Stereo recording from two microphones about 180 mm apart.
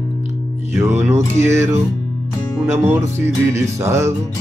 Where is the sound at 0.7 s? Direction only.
15° right (ahead or behind).